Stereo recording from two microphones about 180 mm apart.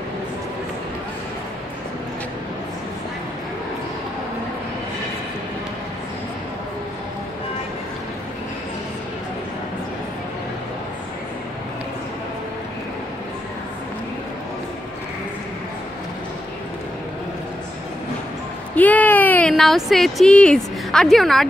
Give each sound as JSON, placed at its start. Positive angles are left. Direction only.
{"t": 18.8, "sound": "speech", "side_deg": 10}